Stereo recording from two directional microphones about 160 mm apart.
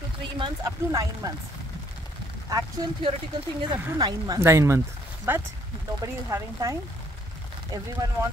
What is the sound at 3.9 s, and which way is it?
Speech, 25° right (ahead or behind).